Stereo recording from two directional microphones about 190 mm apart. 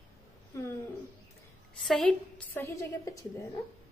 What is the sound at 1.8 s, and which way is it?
A woman's voice, centre (ahead or behind).